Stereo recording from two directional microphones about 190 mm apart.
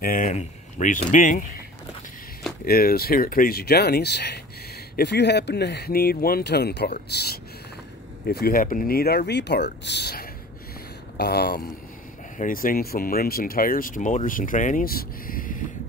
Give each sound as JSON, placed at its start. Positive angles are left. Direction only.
{"t": 0.0, "sound": "speech", "side_deg": 45}
{"t": 2.6, "sound": "speech", "side_deg": 50}
{"t": 12.4, "sound": "speech", "side_deg": 45}